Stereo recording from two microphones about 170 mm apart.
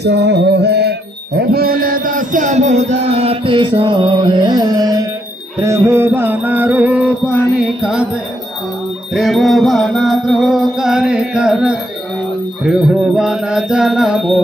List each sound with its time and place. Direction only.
0.0 s music: 80° right; by 5.0 s 20° right (ahead or behind)
5.6 s mantra: 15° right (ahead or behind)
9.1 s music: centre (ahead or behind)